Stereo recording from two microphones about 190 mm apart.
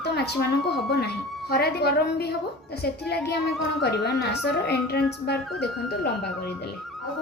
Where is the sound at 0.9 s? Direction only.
55° left (ahead or behind).